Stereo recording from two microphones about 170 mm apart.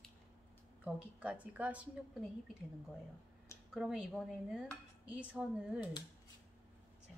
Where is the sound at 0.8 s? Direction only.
5° right (ahead or behind).